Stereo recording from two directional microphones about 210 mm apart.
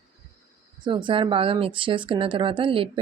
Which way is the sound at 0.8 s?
25° right (ahead or behind).